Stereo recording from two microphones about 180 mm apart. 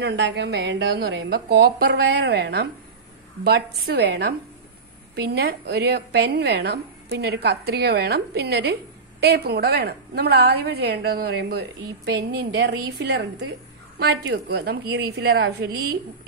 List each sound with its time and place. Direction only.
0.0 s a woman's voice: 75° right (ahead or behind)
12.5 s a woman's voice: 80° right
13.9 s a woman's voice: 65° right (ahead or behind)